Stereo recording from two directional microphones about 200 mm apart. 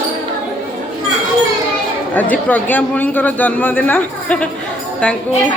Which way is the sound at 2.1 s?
10° left (ahead or behind).